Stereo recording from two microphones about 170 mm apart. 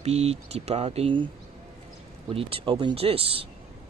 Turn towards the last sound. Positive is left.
turn(degrees=-35)  # may be behind; listen again after turning